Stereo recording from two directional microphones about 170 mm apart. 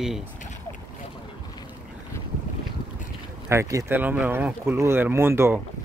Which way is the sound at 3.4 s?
15° right (ahead or behind).